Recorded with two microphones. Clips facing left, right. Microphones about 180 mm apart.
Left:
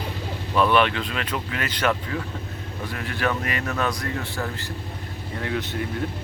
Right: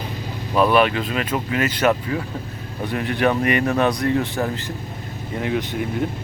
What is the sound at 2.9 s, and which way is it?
Speech, 20° right (ahead or behind).